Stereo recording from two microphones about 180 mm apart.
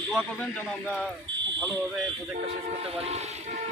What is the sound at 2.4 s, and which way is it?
Speech, 35° right (ahead or behind).